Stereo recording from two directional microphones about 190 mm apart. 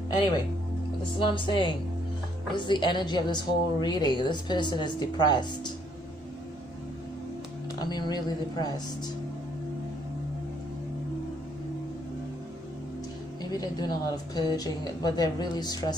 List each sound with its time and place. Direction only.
1.2 s a woman's voice: 25° left (ahead or behind)
7.8 s a woman's voice: 20° left (ahead or behind)
13.4 s a woman's voice: 20° left (ahead or behind)